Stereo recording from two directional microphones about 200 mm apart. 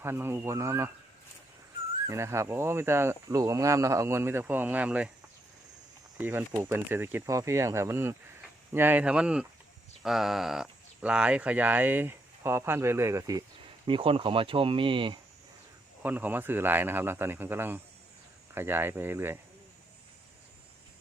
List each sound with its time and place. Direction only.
0.0 s speech: 10° right (ahead or behind)
2.0 s speech: 15° right (ahead or behind)
6.1 s speech: 10° right (ahead or behind); by 15.2 s 25° right (ahead or behind)
16.0 s speech: 10° right (ahead or behind)